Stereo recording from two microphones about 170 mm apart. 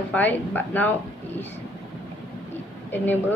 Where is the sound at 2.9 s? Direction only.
10° left (ahead or behind).